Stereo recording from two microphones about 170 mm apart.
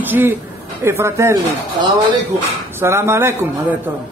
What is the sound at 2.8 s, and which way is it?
Speech, 15° right (ahead or behind).